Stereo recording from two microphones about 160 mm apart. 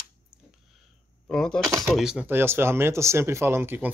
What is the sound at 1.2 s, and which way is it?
Speech, 5° left (ahead or behind).